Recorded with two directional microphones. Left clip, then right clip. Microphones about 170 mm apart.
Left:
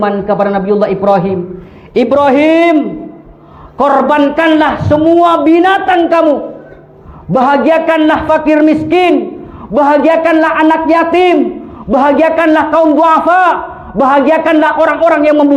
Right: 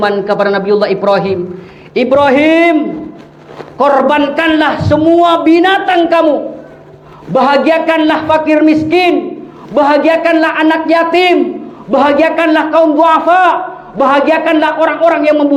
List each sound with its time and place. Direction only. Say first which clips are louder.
0.0 s a man's voice: even; 30° left (ahead or behind)
1.9 s a man's voice: even; 45° left (ahead or behind)
3.8 s a man's voice: even; 40° left (ahead or behind)
7.3 s a man's voice: even; 30° left (ahead or behind)
11.9 s a man's voice: left 1 dB; 40° left (ahead or behind)